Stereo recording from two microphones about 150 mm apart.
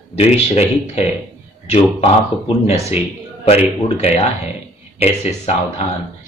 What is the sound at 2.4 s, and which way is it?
A man's voice, 45° left (ahead or behind).